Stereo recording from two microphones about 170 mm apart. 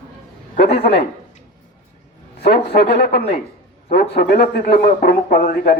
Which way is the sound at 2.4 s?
70° left (ahead or behind).